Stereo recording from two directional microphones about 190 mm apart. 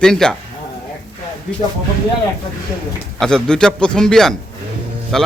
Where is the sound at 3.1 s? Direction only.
5° left (ahead or behind).